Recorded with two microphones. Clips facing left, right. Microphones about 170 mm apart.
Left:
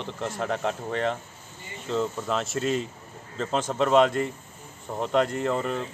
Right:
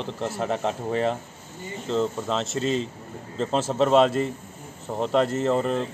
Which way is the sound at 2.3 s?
Centre (ahead or behind).